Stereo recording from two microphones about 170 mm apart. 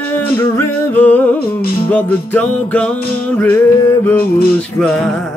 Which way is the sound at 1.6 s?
65° left (ahead or behind).